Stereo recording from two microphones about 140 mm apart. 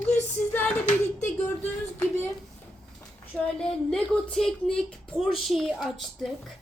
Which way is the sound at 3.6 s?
5° left (ahead or behind).